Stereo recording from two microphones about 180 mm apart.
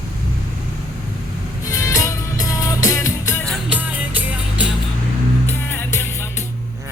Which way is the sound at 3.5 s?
10° right (ahead or behind).